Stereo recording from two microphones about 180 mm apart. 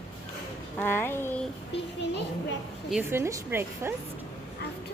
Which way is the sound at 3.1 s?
15° right (ahead or behind).